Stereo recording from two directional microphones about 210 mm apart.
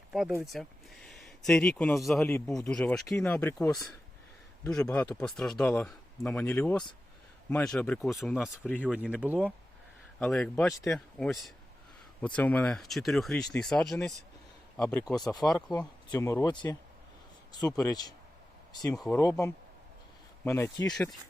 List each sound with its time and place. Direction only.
0.1 s a man's voice: centre (ahead or behind)
8.8 s speech: 5° right (ahead or behind)
10.2 s a man's voice: 5° left (ahead or behind)
15.4 s speech: 20° left (ahead or behind)
18.9 s a man's voice: centre (ahead or behind)
19.1 s speech: 15° left (ahead or behind)
20.9 s a man's voice: centre (ahead or behind)